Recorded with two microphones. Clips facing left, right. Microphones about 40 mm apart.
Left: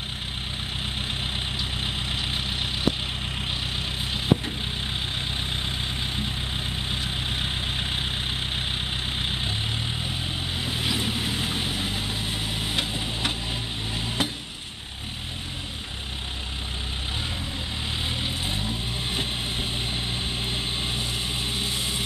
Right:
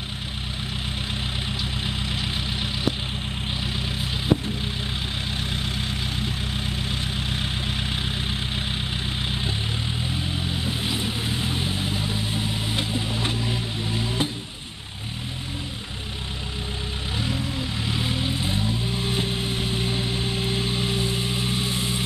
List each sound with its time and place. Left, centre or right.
7.2 s vehicle: left
10.7 s vehicle: left
13.9 s stir: left
18.4 s vehicle: left